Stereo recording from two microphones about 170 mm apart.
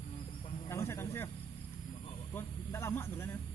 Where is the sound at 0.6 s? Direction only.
15° left (ahead or behind).